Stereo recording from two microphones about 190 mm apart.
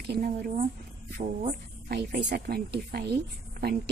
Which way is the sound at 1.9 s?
60° right (ahead or behind).